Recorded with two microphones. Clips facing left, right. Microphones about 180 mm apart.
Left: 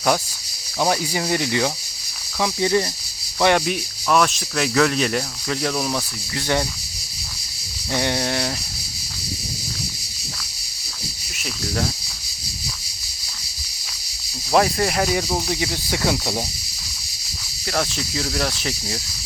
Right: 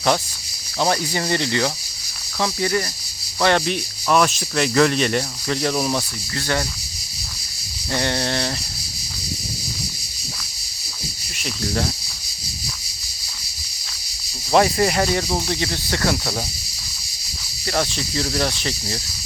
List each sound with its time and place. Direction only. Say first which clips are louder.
0.8 s speech: even; 5° left (ahead or behind)
4.1 s speech: right 1 dB; centre (ahead or behind)
6.3 s speech: left 2 dB; 15° left (ahead or behind)
7.9 s speech: even; 10° left (ahead or behind)
11.6 s speech: right 1 dB; centre (ahead or behind)
14.5 s speech: right 2 dB; centre (ahead or behind)
17.7 s speech: right 1 dB; centre (ahead or behind)